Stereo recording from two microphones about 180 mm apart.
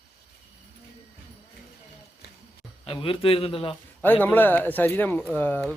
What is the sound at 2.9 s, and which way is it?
Speech, 30° left (ahead or behind).